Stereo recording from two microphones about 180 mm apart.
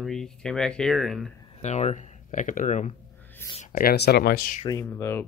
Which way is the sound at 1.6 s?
40° left (ahead or behind).